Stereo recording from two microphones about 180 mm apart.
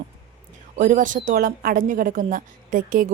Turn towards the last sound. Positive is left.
turn(degrees=-50)  # may be behind; listen again after turning